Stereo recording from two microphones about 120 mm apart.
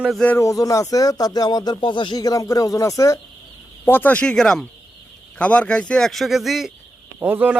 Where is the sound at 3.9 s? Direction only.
15° left (ahead or behind); by 6.7 s centre (ahead or behind).